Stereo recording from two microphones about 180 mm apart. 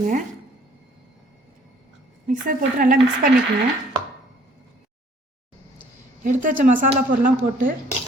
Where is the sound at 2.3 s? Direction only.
50° right (ahead or behind).